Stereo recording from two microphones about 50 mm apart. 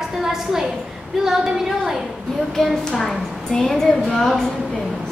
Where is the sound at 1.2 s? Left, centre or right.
Centre.